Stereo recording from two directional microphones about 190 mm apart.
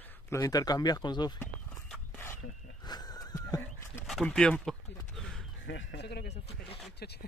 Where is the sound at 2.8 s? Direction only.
20° left (ahead or behind).